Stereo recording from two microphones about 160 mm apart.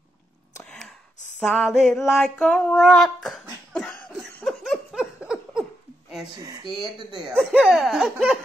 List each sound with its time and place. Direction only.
1.4 s female singing: centre (ahead or behind)
6.3 s speech: 20° right (ahead or behind)
7.2 s speech: centre (ahead or behind)